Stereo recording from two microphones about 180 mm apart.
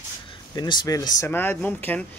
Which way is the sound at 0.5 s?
25° left (ahead or behind).